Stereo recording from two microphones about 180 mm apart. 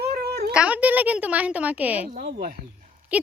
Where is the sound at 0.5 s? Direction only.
10° right (ahead or behind).